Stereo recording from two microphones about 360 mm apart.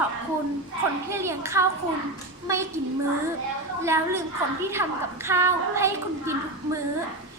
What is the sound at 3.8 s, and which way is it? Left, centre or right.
A woman's voice, centre.